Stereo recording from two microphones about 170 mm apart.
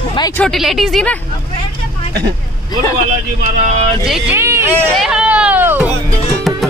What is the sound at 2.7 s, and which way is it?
Speech, 20° left (ahead or behind).